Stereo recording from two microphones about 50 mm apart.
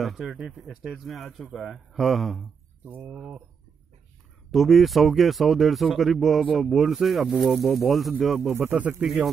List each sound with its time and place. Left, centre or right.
0.0 s speech: centre
2.8 s speech: right
4.5 s speech: centre
8.5 s speech: right
9.0 s speech: centre